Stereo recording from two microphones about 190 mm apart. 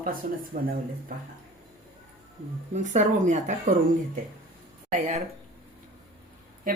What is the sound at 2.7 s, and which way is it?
Speech, 40° right (ahead or behind).